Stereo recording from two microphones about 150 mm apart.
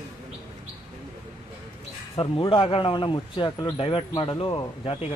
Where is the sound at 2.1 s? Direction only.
35° left (ahead or behind).